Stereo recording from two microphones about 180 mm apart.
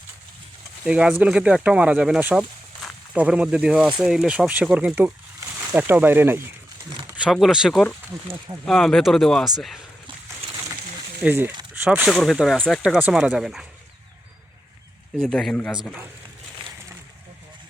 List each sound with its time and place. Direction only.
0.9 s speech: 5° right (ahead or behind)
11.2 s speech: 10° right (ahead or behind)
15.2 s speech: centre (ahead or behind)